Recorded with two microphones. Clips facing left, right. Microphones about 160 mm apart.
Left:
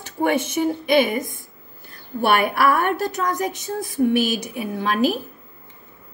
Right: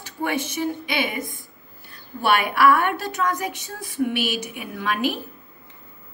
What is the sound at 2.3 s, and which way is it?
A woman's voice, 45° left (ahead or behind).